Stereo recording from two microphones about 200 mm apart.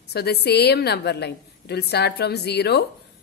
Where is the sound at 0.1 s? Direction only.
55° left (ahead or behind).